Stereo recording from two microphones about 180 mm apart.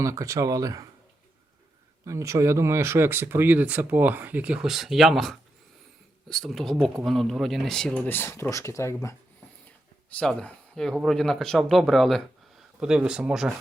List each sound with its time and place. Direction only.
0.0 s speech: 15° right (ahead or behind)
2.0 s speech: 15° right (ahead or behind); by 9.0 s 15° left (ahead or behind)
10.1 s speech: 5° left (ahead or behind)